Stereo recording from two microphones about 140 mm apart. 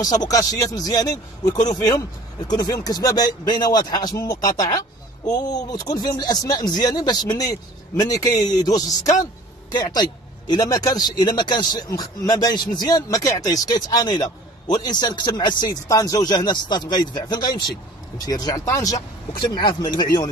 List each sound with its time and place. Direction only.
0.0 s speech: 25° left (ahead or behind)
10.5 s speech: 30° left (ahead or behind)